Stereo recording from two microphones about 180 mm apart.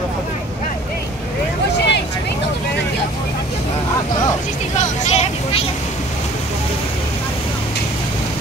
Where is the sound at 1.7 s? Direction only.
70° left (ahead or behind).